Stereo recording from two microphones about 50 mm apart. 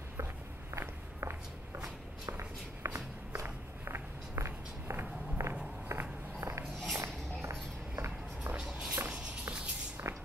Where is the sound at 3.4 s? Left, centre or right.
Right.